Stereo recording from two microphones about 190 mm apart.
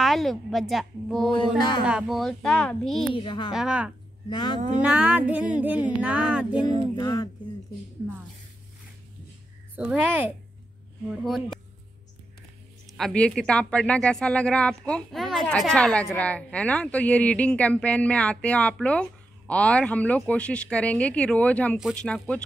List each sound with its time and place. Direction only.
0.0 s speech: centre (ahead or behind)
3.1 s a woman's voice: 25° left (ahead or behind)
3.5 s speech: 5° right (ahead or behind)
4.3 s a woman's voice: 25° left (ahead or behind)
4.8 s music: 5° right (ahead or behind)
7.0 s a woman's voice: 20° left (ahead or behind)
9.8 s music: 5° right (ahead or behind)
11.1 s speech: centre (ahead or behind)
12.9 s a woman's voice: 5° left (ahead or behind)